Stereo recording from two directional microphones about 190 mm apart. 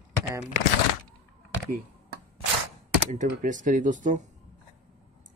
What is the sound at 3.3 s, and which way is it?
Speech, 45° right (ahead or behind).